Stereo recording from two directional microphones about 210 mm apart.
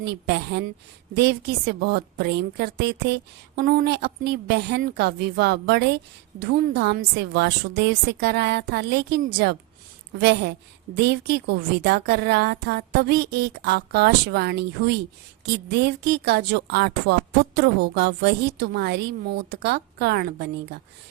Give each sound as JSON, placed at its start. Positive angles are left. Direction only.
{"t": 0.0, "sound": "a woman's voice", "side_deg": -50}